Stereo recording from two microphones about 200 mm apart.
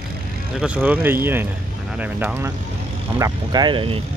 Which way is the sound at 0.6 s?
5° right (ahead or behind).